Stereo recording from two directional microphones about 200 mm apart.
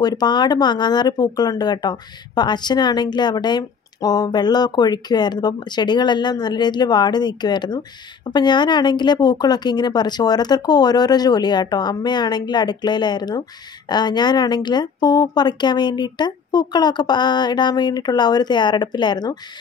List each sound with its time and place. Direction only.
0.0 s speech: 20° left (ahead or behind)